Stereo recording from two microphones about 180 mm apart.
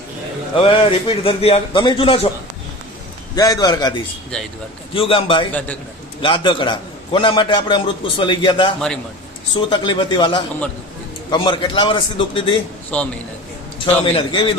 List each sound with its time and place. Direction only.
0.5 s a man's voice: 30° left (ahead or behind)
3.3 s a man's voice: 20° left (ahead or behind)
12.9 s a man's voice: 5° left (ahead or behind)
13.8 s a man's voice: 30° left (ahead or behind)